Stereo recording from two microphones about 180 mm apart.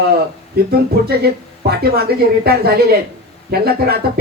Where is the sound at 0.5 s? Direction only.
60° right (ahead or behind).